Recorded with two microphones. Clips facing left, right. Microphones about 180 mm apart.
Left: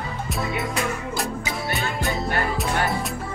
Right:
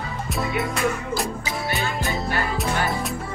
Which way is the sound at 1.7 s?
Centre (ahead or behind).